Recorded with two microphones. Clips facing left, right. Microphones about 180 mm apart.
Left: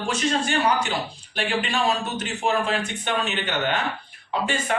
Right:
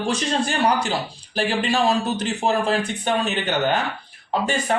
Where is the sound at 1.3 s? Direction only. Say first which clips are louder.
Right 4 dB; 35° right (ahead or behind).